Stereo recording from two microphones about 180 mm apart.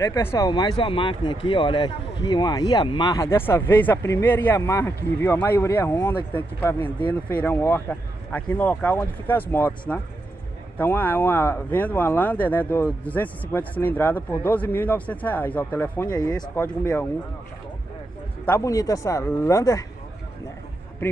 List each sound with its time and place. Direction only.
0.0 s speech: 15° left (ahead or behind)
16.1 s speech: 20° left (ahead or behind)
16.5 s speech: 10° left (ahead or behind)
18.4 s speech: 15° left (ahead or behind)